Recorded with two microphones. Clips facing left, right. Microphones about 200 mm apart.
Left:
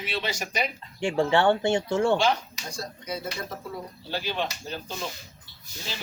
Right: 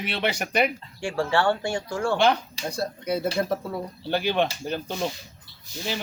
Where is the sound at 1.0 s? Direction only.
20° left (ahead or behind).